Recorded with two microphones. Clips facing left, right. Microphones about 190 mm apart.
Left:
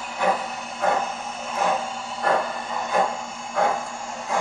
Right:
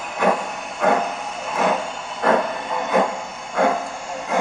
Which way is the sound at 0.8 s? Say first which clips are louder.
Right 4 dB; 70° right (ahead or behind).